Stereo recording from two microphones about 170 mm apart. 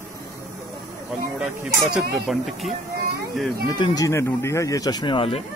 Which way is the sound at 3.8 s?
20° left (ahead or behind).